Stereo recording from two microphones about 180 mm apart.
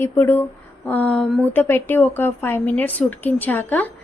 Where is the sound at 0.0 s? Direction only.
10° left (ahead or behind).